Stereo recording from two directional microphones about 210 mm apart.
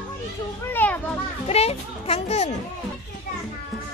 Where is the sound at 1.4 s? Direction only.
30° left (ahead or behind).